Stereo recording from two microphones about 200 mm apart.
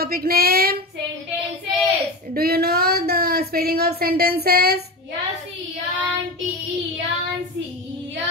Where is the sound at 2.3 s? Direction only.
50° right (ahead or behind).